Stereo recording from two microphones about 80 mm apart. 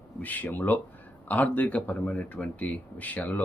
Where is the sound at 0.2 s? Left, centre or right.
Left.